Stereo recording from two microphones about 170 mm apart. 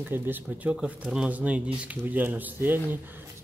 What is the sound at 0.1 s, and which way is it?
Speech, 10° right (ahead or behind).